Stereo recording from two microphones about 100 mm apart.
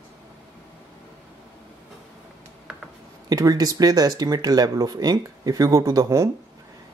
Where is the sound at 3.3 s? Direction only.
40° right (ahead or behind).